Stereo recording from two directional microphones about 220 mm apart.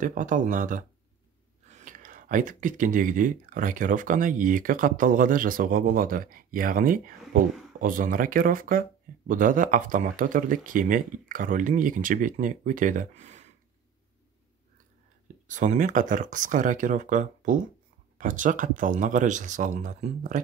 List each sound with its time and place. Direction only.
0.0 s speech: 35° right (ahead or behind)
15.4 s speech: 35° right (ahead or behind)